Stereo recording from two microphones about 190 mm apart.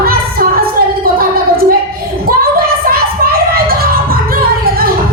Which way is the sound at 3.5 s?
50° right (ahead or behind).